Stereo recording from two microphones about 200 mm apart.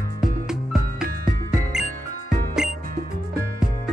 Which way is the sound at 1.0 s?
45° right (ahead or behind).